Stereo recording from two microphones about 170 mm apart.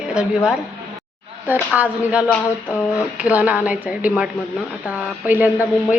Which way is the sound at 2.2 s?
10° left (ahead or behind).